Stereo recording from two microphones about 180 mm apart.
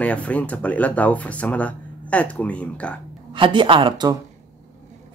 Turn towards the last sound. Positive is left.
turn(degrees=-25)  # may be behind; listen again after turning